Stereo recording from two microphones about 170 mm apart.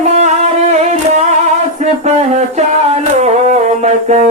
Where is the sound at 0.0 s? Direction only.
40° right (ahead or behind).